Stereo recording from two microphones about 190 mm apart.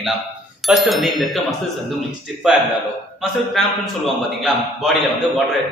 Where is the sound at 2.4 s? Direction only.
5° right (ahead or behind).